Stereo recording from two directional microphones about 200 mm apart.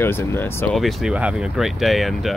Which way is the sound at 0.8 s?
Centre (ahead or behind).